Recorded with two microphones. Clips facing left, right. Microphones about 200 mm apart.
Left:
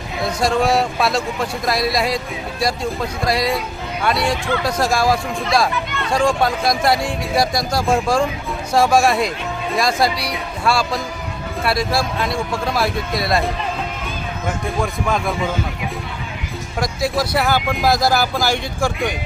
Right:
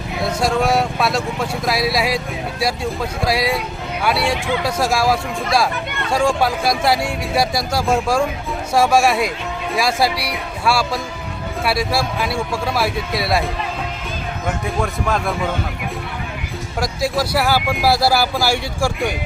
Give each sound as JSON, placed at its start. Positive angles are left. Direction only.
{"t": 0.2, "sound": "speech", "side_deg": 0}
{"t": 14.8, "sound": "speech", "side_deg": -5}
{"t": 16.8, "sound": "speech", "side_deg": 0}